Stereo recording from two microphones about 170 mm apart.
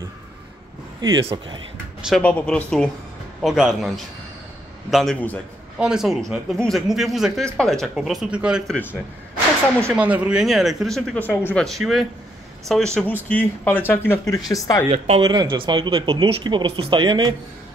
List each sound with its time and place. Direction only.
1.2 s speech: 30° right (ahead or behind)
2.0 s a sound: centre (ahead or behind)
2.2 s speech: 5° left (ahead or behind)
5.8 s speech: 5° right (ahead or behind)
9.8 s speech: 10° right (ahead or behind); by 14.9 s 20° left (ahead or behind)
14.9 s speech: 35° right (ahead or behind)
15.2 s speech: 25° right (ahead or behind)